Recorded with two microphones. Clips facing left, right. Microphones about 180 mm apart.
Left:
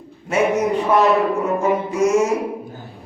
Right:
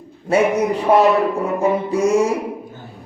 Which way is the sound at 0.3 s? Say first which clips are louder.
Right 3 dB; 35° right (ahead or behind).